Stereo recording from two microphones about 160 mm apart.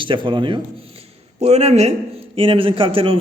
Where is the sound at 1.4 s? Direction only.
40° right (ahead or behind).